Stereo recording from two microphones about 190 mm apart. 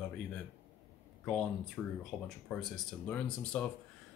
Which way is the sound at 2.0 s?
Centre (ahead or behind).